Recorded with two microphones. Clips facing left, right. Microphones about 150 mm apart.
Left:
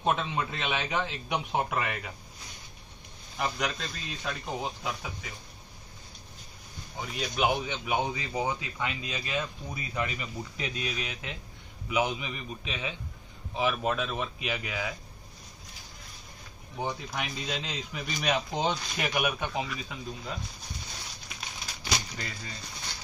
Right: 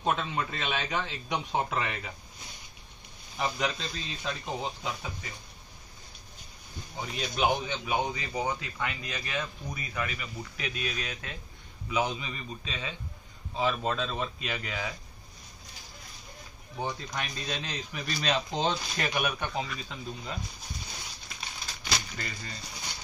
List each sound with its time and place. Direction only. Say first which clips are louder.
0.0 s a man's voice: left 1 dB; 15° left (ahead or behind)
3.3 s speech: right 1 dB; centre (ahead or behind)
7.0 s a man's voice: even; 5° left (ahead or behind)
16.8 s a man's voice: left 1 dB; 10° left (ahead or behind)
21.8 s speech: left 1 dB; 15° left (ahead or behind)